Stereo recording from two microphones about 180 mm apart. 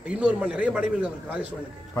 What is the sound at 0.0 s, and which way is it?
A man's voice, 5° right (ahead or behind).